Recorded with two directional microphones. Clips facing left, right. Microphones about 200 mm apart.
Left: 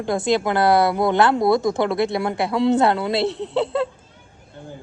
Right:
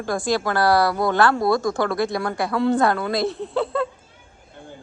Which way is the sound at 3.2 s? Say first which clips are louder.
Left 2 dB; 80° left.